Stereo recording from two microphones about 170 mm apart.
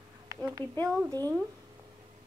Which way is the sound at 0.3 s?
20° right (ahead or behind).